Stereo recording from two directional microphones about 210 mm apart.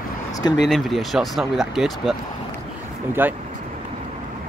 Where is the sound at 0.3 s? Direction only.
20° left (ahead or behind).